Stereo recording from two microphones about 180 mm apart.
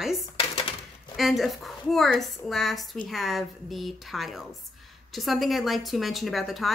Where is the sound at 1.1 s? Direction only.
Centre (ahead or behind).